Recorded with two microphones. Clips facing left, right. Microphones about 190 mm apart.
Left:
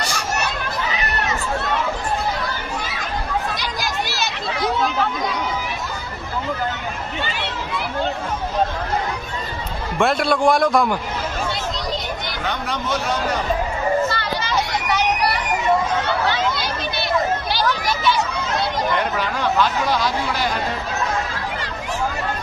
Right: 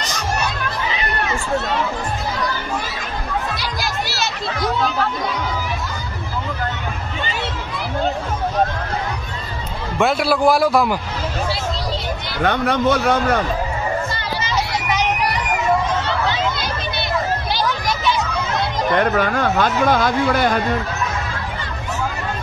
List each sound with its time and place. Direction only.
9.9 s a man's voice: centre (ahead or behind)
12.4 s a man's voice: 55° right (ahead or behind)
18.9 s speech: 50° right (ahead or behind)